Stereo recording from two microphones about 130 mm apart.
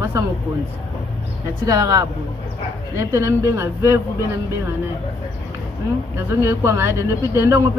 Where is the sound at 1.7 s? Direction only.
25° right (ahead or behind).